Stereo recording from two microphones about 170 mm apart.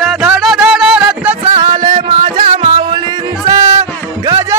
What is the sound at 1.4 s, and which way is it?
Music, 25° right (ahead or behind).